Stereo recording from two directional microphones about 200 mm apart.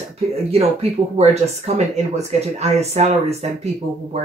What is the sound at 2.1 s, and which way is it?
Speech, 35° right (ahead or behind).